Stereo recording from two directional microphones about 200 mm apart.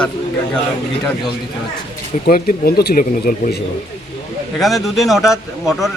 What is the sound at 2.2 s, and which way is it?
Speech, 45° left (ahead or behind).